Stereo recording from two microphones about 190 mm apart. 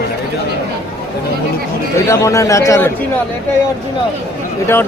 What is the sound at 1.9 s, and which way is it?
Speech, 15° left (ahead or behind).